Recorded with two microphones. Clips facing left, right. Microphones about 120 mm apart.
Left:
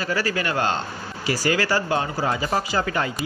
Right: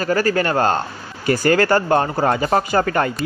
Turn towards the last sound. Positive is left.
turn(degrees=-50)  # may be behind; listen again after turning